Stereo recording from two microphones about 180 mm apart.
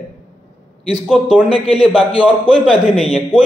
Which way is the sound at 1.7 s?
5° right (ahead or behind).